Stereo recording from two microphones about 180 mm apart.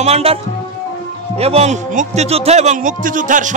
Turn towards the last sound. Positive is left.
turn(degrees=-45)  # may be behind; listen again after turning